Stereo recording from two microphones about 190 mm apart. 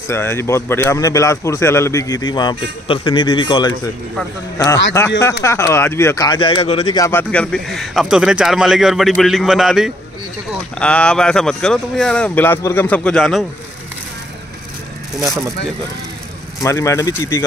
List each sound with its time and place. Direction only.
0.1 s speech: 15° left (ahead or behind)
5.2 s speech: 15° left (ahead or behind)
16.6 s speech: 15° left (ahead or behind)